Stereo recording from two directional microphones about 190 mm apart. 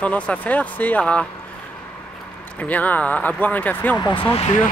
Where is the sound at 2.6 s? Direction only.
10° left (ahead or behind).